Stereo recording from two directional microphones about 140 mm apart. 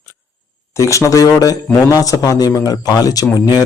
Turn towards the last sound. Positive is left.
turn(degrees=25)  # may be behind; listen again after turning